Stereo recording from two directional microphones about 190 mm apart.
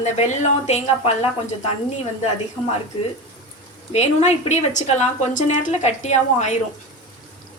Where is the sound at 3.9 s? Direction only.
35° left (ahead or behind).